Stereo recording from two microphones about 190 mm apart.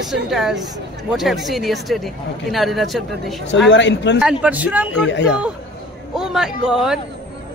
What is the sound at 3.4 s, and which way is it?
Speech, 70° left (ahead or behind).